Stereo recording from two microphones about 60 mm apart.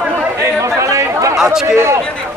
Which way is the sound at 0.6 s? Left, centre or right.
Right.